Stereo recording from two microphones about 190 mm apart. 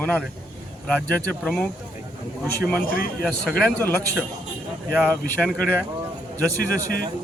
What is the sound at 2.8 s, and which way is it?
Speech, 50° left (ahead or behind).